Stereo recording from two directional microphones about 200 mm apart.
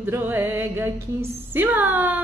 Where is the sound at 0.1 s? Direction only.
10° right (ahead or behind).